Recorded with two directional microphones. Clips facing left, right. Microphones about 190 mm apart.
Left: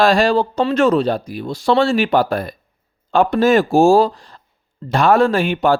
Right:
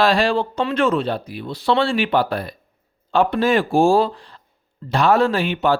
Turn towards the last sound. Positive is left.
turn(degrees=45)  # may be behind; listen again after turning